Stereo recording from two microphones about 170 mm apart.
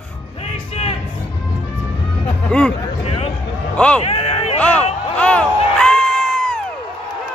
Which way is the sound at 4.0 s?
35° left (ahead or behind).